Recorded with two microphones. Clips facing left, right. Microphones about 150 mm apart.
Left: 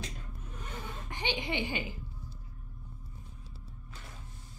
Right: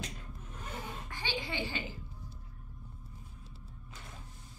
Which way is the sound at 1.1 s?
20° left (ahead or behind).